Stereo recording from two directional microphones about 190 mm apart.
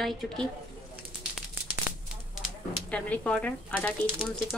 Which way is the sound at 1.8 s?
5° right (ahead or behind).